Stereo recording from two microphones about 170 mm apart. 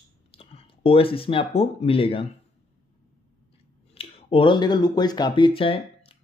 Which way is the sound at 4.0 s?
35° left (ahead or behind).